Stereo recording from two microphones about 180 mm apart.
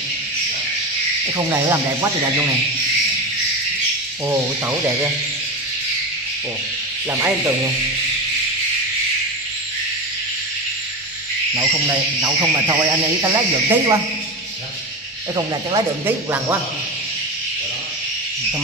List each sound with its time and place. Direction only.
1.3 s speech: 15° right (ahead or behind)
4.3 s speech: 15° right (ahead or behind)
7.1 s speech: 15° right (ahead or behind)
11.5 s speech: 15° right (ahead or behind)
16.1 s speech: 15° right (ahead or behind)